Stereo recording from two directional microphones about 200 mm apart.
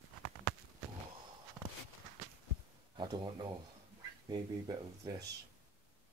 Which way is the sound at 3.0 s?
20° right (ahead or behind).